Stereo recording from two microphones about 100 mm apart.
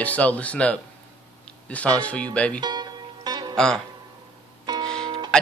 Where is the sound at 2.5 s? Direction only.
45° right (ahead or behind).